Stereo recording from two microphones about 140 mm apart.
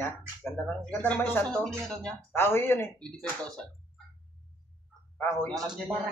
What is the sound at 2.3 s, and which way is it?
Speech, 15° left (ahead or behind).